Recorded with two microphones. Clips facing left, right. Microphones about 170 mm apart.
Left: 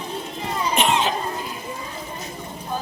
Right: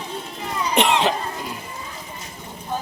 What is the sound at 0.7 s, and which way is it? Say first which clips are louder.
Cough: right 3 dB; 70° right (ahead or behind).